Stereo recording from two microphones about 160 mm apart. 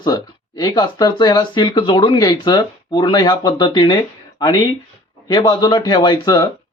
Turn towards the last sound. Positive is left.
turn(degrees=25)  # may be behind; listen again after turning